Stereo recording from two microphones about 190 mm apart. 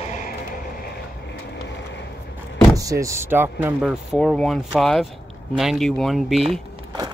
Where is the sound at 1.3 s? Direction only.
65° left (ahead or behind).